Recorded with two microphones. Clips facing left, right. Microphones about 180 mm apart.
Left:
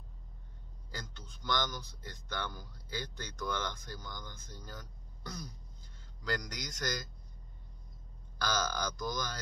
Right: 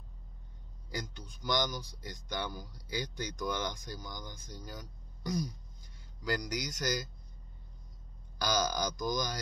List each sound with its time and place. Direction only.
0.8 s speech: 15° right (ahead or behind)
8.4 s speech: 10° right (ahead or behind)